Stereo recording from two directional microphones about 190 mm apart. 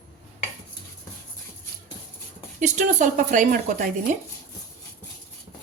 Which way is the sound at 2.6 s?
40° right (ahead or behind).